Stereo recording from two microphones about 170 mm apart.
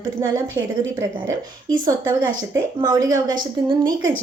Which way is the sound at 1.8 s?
25° right (ahead or behind).